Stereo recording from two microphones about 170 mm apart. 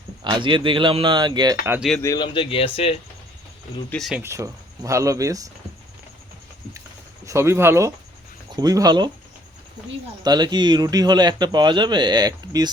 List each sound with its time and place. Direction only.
0.3 s speech: 30° right (ahead or behind)
1.6 s speech: 10° right (ahead or behind)
2.0 s speech: 20° left (ahead or behind)
3.8 s speech: centre (ahead or behind)
4.2 s speech: 15° right (ahead or behind)
7.3 s speech: 15° right (ahead or behind)
10.2 s speech: 25° right (ahead or behind)